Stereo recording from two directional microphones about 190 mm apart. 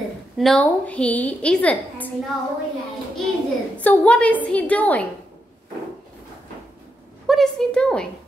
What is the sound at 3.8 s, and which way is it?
A woman's voice, 5° left (ahead or behind).